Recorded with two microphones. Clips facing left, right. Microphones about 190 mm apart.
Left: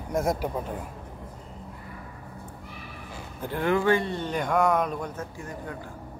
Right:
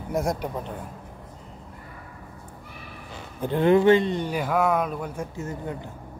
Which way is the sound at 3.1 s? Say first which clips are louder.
Right 6 dB; 25° right (ahead or behind).